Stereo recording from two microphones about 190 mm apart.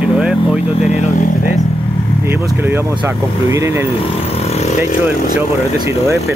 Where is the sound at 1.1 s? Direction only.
50° left (ahead or behind).